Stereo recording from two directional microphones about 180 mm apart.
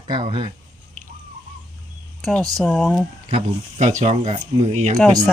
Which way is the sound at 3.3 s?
40° right (ahead or behind).